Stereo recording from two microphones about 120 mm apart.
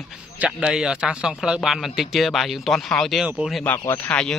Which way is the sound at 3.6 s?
20° left (ahead or behind).